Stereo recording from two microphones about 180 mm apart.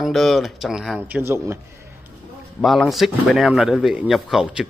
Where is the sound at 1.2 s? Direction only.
15° right (ahead or behind).